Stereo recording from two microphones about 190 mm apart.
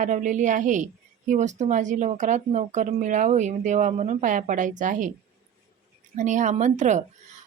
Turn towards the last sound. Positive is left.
turn(degrees=-40)  # may be behind; listen again after turning